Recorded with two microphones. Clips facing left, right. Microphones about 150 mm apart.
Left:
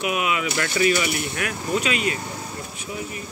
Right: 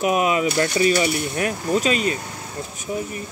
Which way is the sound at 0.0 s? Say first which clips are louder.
Right 5 dB; 35° right (ahead or behind).